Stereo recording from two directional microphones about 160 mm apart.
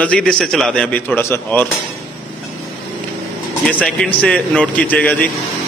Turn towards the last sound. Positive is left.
turn(degrees=10)  # may be behind; listen again after turning